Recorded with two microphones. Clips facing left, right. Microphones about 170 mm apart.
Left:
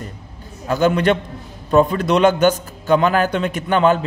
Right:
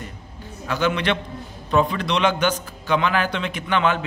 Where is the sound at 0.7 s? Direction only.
40° left (ahead or behind).